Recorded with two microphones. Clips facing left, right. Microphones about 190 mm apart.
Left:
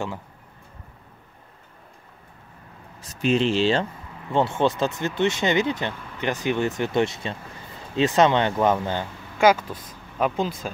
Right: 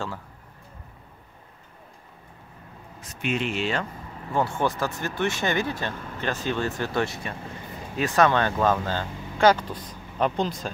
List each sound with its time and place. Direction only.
3.0 s speech: 35° left (ahead or behind); by 10.7 s 5° left (ahead or behind)